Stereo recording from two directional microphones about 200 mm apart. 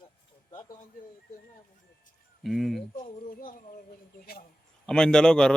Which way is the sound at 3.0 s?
45° left (ahead or behind).